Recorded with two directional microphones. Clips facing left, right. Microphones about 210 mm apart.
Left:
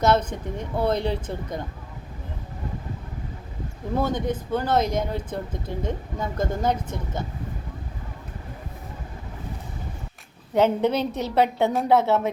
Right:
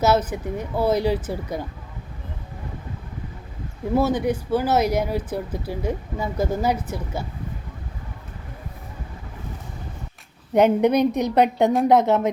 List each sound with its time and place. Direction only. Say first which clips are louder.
0.0 s speech: right 1 dB; 5° right (ahead or behind)
3.9 s speech: right 4 dB; 5° right (ahead or behind)
10.5 s speech: right 4 dB; 15° right (ahead or behind)